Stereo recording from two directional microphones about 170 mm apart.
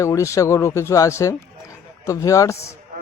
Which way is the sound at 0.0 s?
15° left (ahead or behind).